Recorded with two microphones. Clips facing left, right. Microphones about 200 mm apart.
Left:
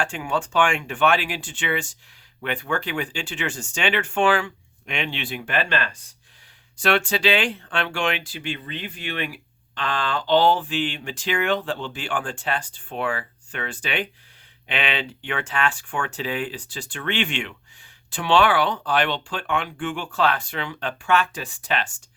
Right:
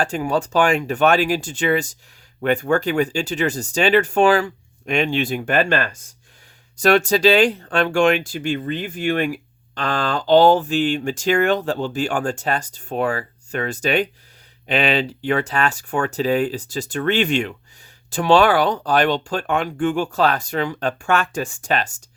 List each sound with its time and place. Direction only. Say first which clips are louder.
0.0 s speech: right 5 dB; 40° right (ahead or behind)